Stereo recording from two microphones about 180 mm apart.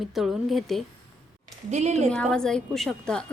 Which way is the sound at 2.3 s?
5° left (ahead or behind).